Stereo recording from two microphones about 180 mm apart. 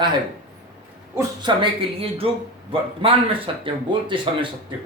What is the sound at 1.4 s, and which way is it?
Speech, 25° right (ahead or behind).